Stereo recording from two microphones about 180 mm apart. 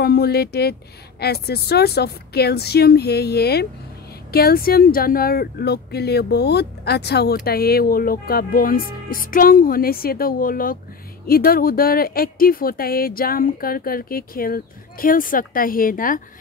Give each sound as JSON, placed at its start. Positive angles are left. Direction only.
{"t": 0.0, "sound": "speech", "side_deg": 60}